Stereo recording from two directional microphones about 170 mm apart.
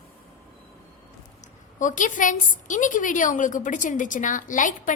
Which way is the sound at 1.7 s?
50° left (ahead or behind).